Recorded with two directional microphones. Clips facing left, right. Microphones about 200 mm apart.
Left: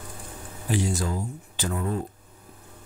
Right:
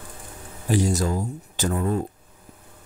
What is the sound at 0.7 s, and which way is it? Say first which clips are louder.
Speech: right 4 dB; 40° right (ahead or behind).